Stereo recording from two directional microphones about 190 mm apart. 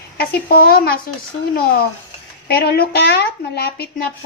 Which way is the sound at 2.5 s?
55° left (ahead or behind).